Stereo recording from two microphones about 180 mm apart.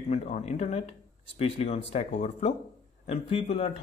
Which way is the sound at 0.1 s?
35° left (ahead or behind).